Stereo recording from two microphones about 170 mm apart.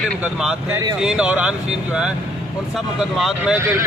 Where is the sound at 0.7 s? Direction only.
20° right (ahead or behind).